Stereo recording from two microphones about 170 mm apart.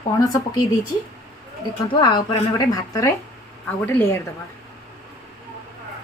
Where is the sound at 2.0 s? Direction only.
25° left (ahead or behind).